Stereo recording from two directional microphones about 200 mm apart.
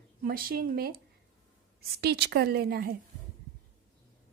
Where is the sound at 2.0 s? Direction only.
55° right (ahead or behind).